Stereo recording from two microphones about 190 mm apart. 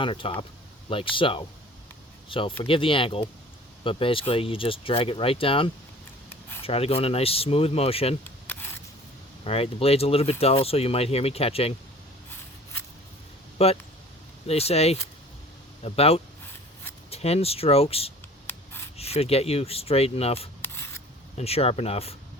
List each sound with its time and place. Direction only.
0.0 s speech: 25° left (ahead or behind)
9.4 s speech: 30° left (ahead or behind)
13.6 s speech: 30° left (ahead or behind)
18.4 s writing: 10° left (ahead or behind)
18.9 s speech: 30° left (ahead or behind)
20.6 s a sound: 10° left (ahead or behind)
21.3 s speech: 30° left (ahead or behind)